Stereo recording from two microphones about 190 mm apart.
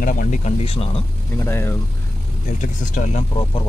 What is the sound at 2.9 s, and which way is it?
Speech, 45° left (ahead or behind).